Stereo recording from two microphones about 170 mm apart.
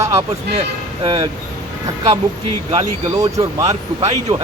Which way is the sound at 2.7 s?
35° right (ahead or behind).